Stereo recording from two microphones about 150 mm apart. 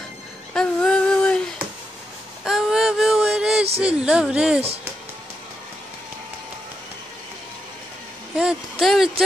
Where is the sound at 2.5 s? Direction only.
Centre (ahead or behind).